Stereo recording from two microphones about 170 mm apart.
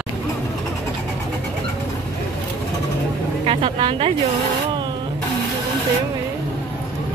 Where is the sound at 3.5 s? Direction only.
30° right (ahead or behind).